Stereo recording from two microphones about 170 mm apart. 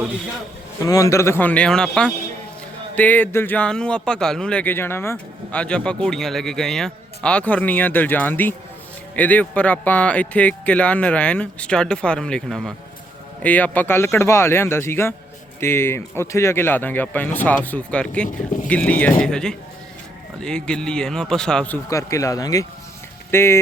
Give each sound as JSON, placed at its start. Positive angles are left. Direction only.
{"t": 0.8, "sound": "a man's voice", "side_deg": 20}
{"t": 21.8, "sound": "speech", "side_deg": 20}